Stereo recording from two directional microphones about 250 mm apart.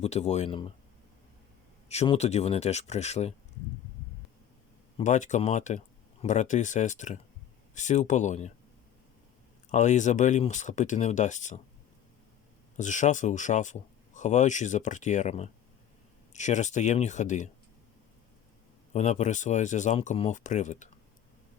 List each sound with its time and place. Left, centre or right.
0.0 s speech: left
1.9 s speech: left
4.9 s speech: left
9.6 s speech: left
12.7 s speech: left
18.9 s speech: left